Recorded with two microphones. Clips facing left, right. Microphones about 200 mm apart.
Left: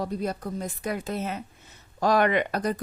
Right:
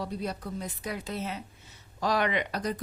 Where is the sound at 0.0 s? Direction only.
50° left (ahead or behind).